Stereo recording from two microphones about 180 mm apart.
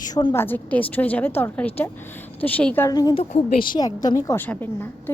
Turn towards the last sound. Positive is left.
turn(degrees=10)  # may be behind; listen again after turning